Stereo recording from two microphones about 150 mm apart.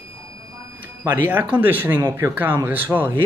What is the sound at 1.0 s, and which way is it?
Speech, 15° right (ahead or behind).